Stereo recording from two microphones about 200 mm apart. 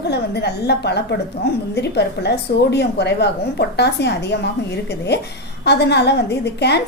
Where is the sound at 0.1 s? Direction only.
55° left (ahead or behind).